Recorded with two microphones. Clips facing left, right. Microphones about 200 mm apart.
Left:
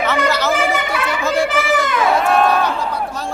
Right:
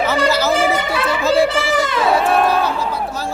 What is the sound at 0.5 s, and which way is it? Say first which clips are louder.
Chatter: right 2 dB; 30° right (ahead or behind).